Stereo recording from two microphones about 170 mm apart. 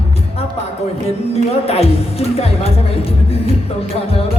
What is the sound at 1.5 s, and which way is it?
Music, 35° left (ahead or behind).